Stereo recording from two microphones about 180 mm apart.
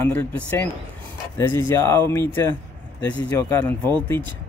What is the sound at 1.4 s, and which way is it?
Speech, 15° left (ahead or behind).